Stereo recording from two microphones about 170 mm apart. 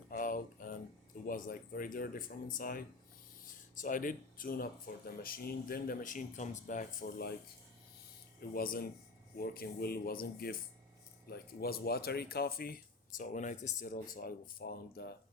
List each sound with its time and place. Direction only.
0.1 s a sound: 55° left (ahead or behind)
1.3 s speech: 55° left (ahead or behind)
8.4 s speech: 60° left (ahead or behind)